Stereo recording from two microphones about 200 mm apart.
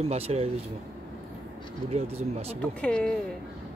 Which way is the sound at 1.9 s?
30° right (ahead or behind).